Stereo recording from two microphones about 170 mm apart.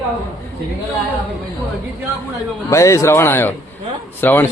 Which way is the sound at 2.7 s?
20° left (ahead or behind).